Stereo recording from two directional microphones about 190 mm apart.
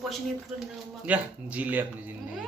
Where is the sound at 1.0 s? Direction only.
5° right (ahead or behind).